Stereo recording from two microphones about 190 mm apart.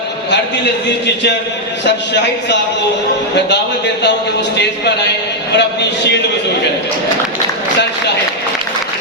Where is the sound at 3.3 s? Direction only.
65° left (ahead or behind).